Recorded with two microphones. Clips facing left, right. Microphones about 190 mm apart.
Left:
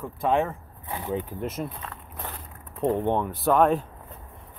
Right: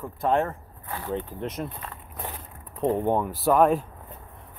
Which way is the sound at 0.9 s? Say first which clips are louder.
Left 1 dB; 15° left (ahead or behind).